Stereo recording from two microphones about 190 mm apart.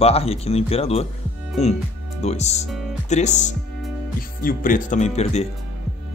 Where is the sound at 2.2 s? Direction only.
35° left (ahead or behind).